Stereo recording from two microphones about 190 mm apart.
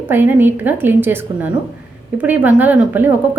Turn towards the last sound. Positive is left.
turn(degrees=-10)  # may be behind; listen again after turning